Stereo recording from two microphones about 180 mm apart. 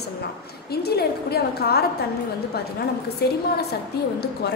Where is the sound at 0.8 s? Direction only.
60° left (ahead or behind).